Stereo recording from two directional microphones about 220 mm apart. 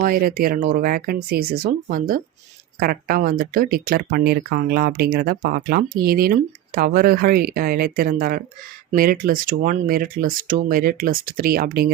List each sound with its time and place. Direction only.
0.0 s speech: 40° right (ahead or behind)